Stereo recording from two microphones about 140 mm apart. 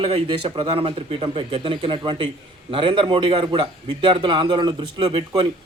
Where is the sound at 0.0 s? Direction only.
40° right (ahead or behind).